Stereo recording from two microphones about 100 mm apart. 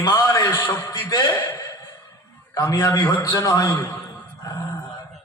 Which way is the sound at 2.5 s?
30° left (ahead or behind).